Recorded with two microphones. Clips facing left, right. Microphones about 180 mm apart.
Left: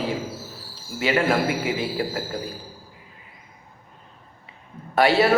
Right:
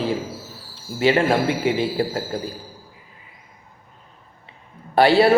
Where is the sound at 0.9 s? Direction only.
30° right (ahead or behind).